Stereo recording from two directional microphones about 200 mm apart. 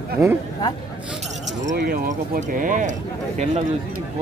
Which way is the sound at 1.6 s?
45° right (ahead or behind).